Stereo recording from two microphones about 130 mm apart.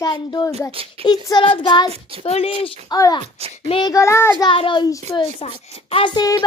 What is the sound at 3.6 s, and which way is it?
Speech, 40° left (ahead or behind).